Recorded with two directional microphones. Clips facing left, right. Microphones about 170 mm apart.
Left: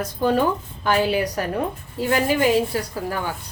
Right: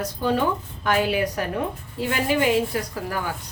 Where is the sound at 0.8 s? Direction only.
30° left (ahead or behind).